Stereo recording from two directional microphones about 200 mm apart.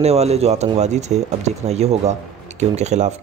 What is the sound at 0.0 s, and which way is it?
Speech, 30° right (ahead or behind).